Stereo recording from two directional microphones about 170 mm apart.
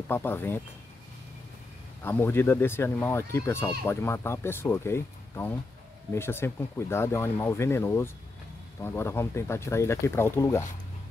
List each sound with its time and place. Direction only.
0.1 s speech: 10° left (ahead or behind)
2.0 s speech: 10° left (ahead or behind)